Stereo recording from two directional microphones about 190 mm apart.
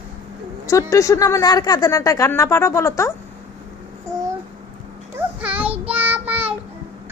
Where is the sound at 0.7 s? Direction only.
15° left (ahead or behind).